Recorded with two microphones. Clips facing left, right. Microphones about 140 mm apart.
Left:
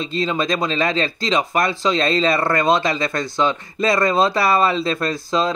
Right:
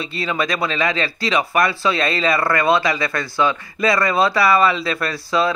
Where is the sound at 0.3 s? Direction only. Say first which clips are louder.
Right 2 dB; 30° left (ahead or behind).